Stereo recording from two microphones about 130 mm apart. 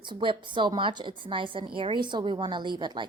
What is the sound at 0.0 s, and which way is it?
A woman's voice, 40° right (ahead or behind).